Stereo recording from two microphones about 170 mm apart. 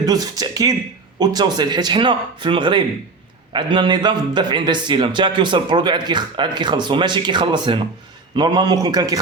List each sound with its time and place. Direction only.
0.0 s speech: 20° right (ahead or behind)